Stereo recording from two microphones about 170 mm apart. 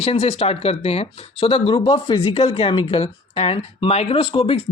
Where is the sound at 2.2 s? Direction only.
35° left (ahead or behind).